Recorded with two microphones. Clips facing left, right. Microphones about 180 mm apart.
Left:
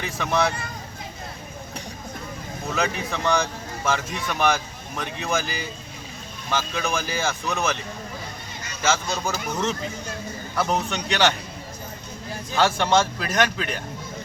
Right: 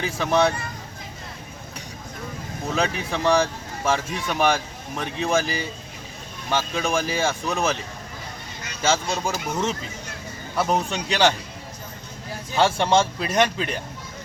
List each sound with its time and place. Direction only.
0.2 s speech: 30° right (ahead or behind)
2.7 s speech: 30° right (ahead or behind)
8.8 s speech: 30° right (ahead or behind)
9.5 s a man's voice: 10° right (ahead or behind)
10.8 s speech: 30° right (ahead or behind)
12.5 s speech: 30° right (ahead or behind)